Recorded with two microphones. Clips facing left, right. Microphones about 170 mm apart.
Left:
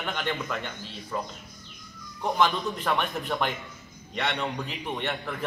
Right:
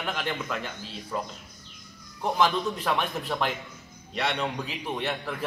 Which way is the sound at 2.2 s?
5° right (ahead or behind).